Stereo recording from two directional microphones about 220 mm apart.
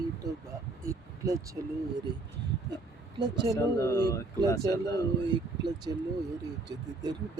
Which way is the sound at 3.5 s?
15° left (ahead or behind).